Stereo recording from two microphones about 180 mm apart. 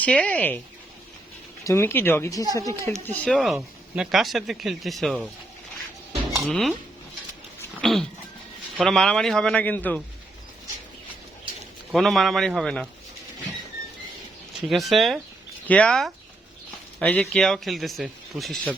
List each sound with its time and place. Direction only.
0.0 s speech: 5° left (ahead or behind)
1.6 s speech: 15° left (ahead or behind)
2.9 s speech: 5° left (ahead or behind)
6.4 s speech: centre (ahead or behind)
7.8 s cat: centre (ahead or behind)
8.8 s speech: 5° left (ahead or behind)
11.9 s speech: centre (ahead or behind)
14.7 s speech: centre (ahead or behind)